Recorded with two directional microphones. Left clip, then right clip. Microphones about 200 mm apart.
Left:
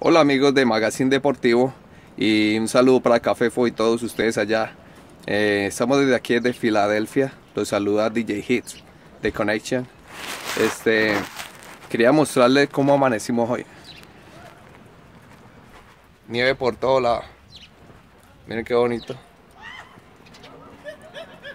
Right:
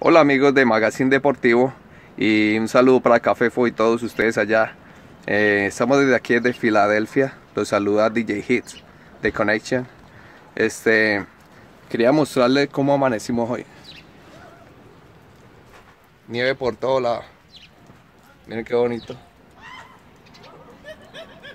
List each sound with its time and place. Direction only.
0.0 s speech: 5° left (ahead or behind)
16.3 s speech: 10° left (ahead or behind)
18.5 s speech: 25° left (ahead or behind)
20.9 s a sound: 40° right (ahead or behind)